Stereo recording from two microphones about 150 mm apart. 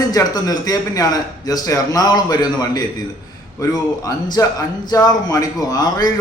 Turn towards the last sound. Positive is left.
turn(degrees=25)  # may be behind; listen again after turning